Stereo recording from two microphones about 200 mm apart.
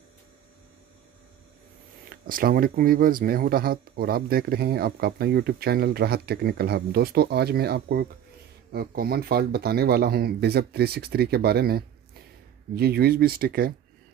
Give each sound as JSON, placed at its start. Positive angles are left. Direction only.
{"t": 2.0, "sound": "speech", "side_deg": -45}